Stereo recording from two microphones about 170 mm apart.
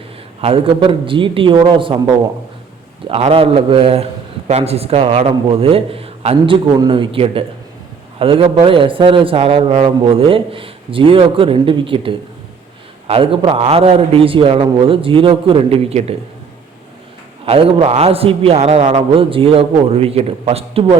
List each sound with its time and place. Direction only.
0.4 s a man's voice: 35° right (ahead or behind)
17.4 s a man's voice: 35° right (ahead or behind)